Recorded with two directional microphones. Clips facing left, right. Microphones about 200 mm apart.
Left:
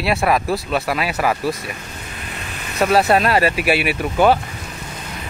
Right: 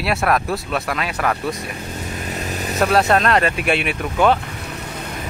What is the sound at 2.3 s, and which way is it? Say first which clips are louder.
Vehicle: right 7 dB; 40° right (ahead or behind).